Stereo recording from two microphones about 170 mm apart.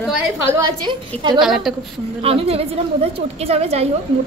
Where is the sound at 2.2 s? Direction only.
35° right (ahead or behind).